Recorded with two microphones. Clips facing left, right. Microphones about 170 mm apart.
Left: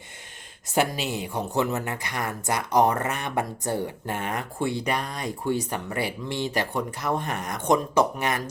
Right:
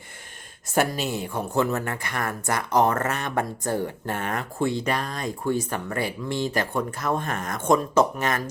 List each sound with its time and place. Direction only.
0.7 s speech: 45° right (ahead or behind)
1.1 s speech: 15° left (ahead or behind)